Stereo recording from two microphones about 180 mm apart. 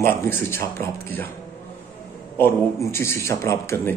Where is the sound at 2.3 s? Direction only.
15° left (ahead or behind).